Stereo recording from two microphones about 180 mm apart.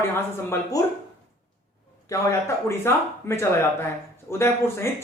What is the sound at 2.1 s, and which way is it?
Speech, 20° left (ahead or behind).